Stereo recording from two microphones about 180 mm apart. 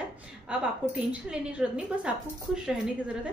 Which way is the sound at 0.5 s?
5° right (ahead or behind).